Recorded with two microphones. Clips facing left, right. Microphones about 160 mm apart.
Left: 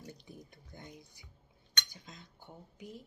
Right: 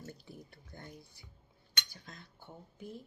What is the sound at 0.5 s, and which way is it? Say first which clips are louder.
Speech: even; 15° left (ahead or behind).